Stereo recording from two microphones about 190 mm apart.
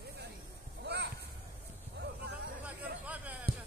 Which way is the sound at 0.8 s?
60° right (ahead or behind).